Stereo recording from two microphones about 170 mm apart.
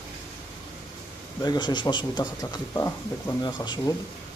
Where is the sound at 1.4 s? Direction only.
25° left (ahead or behind).